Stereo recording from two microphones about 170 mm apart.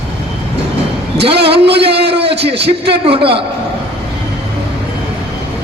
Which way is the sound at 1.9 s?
80° right.